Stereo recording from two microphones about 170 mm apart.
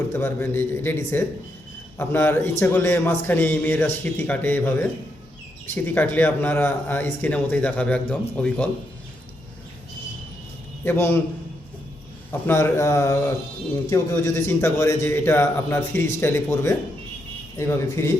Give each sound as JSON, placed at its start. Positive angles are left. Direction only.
{"t": 0.1, "sound": "speech", "side_deg": 15}
{"t": 10.8, "sound": "speech", "side_deg": 15}
{"t": 12.3, "sound": "speech", "side_deg": 15}